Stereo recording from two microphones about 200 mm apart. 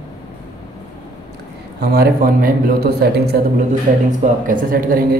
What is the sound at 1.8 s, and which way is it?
A man's voice, 50° right (ahead or behind).